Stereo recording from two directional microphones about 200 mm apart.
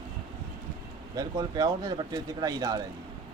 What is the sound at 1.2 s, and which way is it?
Speech, 20° right (ahead or behind).